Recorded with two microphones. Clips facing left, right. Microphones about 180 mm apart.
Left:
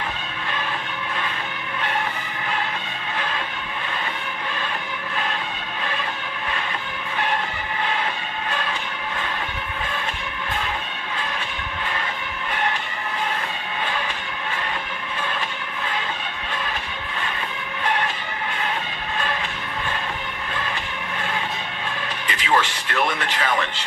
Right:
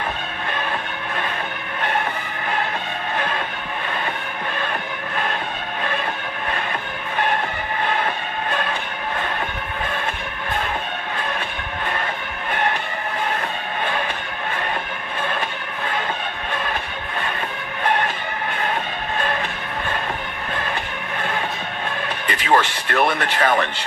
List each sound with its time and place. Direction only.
7.9 s train: 55° right (ahead or behind)
22.3 s speech: 50° right (ahead or behind)